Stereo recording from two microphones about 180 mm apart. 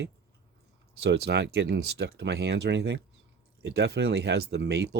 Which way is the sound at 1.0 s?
70° right (ahead or behind).